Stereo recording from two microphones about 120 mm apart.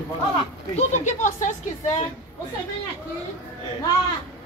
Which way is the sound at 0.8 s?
85° left.